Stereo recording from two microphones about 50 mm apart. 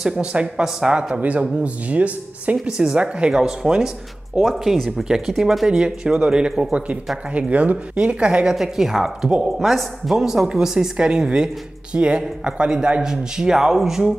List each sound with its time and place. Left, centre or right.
0.1 s a woman's voice: right
1.6 s speech: right
2.5 s a woman's voice: centre
5.0 s a woman's voice: centre
8.5 s a woman's voice: centre